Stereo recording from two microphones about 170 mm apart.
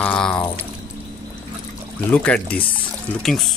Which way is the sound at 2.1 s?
10° left (ahead or behind).